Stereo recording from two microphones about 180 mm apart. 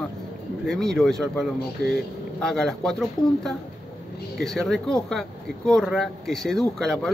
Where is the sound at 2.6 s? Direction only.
Centre (ahead or behind).